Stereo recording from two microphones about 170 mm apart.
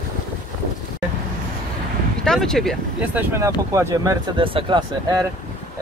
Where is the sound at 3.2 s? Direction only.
15° right (ahead or behind).